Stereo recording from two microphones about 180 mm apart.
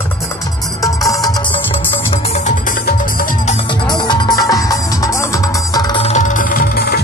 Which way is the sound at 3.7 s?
25° left (ahead or behind).